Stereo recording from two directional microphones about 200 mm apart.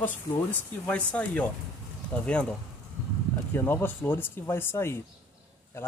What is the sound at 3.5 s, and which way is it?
Speech, 10° left (ahead or behind).